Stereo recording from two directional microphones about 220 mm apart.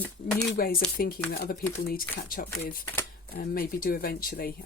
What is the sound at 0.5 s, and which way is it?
Speech, 45° left (ahead or behind).